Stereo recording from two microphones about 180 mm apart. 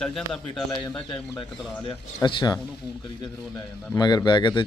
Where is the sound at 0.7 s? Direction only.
25° left (ahead or behind).